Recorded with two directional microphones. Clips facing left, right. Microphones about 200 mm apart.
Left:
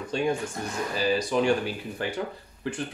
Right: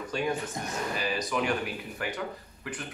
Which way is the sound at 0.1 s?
25° left (ahead or behind).